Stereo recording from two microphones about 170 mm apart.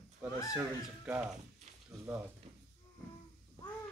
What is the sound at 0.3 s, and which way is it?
Speech, 20° left (ahead or behind).